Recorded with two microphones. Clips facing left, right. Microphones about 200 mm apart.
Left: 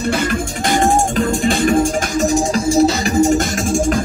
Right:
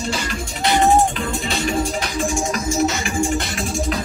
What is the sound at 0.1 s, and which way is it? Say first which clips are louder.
Music: left 7 dB; 50° left (ahead or behind).